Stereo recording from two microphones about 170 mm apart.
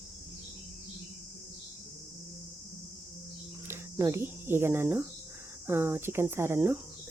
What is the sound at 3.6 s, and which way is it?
Speech, 15° right (ahead or behind).